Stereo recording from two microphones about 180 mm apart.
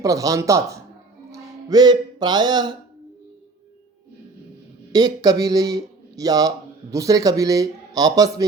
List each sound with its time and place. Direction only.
0.0 s speech: 20° right (ahead or behind)
4.9 s speech: 20° right (ahead or behind)